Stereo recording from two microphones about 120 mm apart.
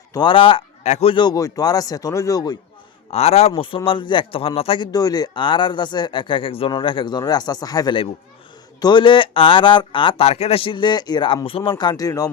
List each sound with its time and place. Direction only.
0.1 s speech: 40° left (ahead or behind)
3.1 s a man's voice: 60° left (ahead or behind)
3.5 s speech: 45° left (ahead or behind)
4.9 s speech: 35° left (ahead or behind)
11.8 s speech: 35° left (ahead or behind)